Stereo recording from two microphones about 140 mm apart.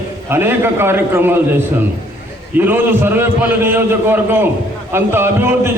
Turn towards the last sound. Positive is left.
turn(degrees=-15)  # may be behind; listen again after turning